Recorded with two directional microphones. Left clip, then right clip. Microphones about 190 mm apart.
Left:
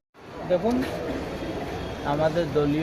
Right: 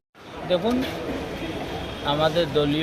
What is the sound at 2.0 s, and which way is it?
Speech, centre (ahead or behind).